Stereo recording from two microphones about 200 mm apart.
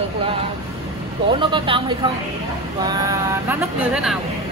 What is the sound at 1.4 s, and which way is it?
Speech, 25° right (ahead or behind).